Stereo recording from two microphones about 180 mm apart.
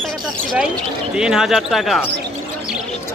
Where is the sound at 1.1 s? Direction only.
5° right (ahead or behind).